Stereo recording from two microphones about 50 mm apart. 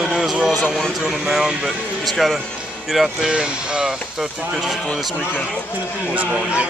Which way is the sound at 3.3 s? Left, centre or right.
Centre.